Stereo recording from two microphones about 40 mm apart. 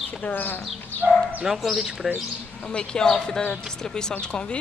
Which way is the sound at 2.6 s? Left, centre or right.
Left.